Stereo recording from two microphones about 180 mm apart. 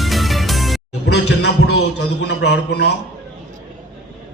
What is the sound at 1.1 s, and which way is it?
Speech, 70° left (ahead or behind).